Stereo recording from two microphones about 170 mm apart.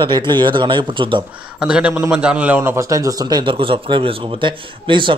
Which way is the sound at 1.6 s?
5° right (ahead or behind).